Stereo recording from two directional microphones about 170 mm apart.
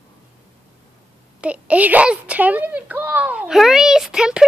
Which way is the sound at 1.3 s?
5° right (ahead or behind).